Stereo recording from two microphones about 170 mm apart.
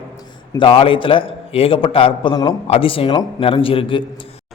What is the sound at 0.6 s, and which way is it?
A man's voice, 30° left (ahead or behind).